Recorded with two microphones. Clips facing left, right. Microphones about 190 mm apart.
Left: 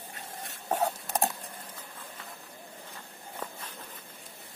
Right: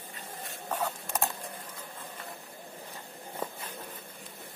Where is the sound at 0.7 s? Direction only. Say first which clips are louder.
Left 4 dB; 40° left (ahead or behind).